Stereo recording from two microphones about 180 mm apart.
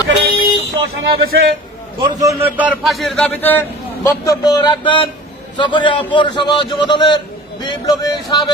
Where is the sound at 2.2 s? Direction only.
15° right (ahead or behind).